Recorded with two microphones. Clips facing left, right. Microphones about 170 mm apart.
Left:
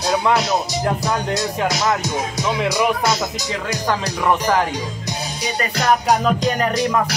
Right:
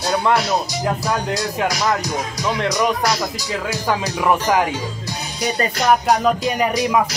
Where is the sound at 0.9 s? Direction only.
Centre (ahead or behind).